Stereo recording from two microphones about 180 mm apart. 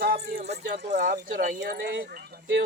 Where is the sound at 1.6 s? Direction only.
70° right (ahead or behind).